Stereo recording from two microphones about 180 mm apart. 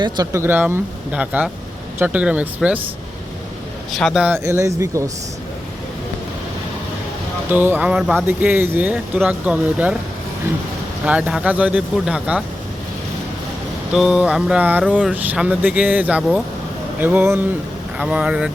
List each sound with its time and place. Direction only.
0.0 s speech: 20° right (ahead or behind)
3.9 s speech: centre (ahead or behind)
4.4 s speech: 15° right (ahead or behind)
7.5 s speech: 10° right (ahead or behind)
11.0 s speech: 5° right (ahead or behind)
13.9 s speech: 5° right (ahead or behind)